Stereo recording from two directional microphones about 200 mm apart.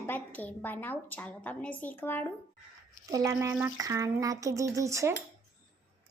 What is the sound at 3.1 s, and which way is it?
A child's voice, 15° right (ahead or behind).